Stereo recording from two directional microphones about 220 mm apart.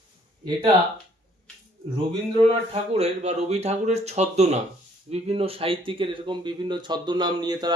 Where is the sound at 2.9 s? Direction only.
30° right (ahead or behind).